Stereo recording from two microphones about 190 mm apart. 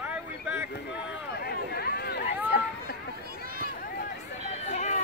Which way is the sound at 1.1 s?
60° left (ahead or behind).